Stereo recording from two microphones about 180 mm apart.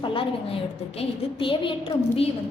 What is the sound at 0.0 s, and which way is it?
A woman's voice, 30° left (ahead or behind).